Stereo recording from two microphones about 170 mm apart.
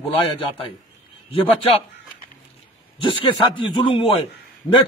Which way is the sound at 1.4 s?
30° left (ahead or behind).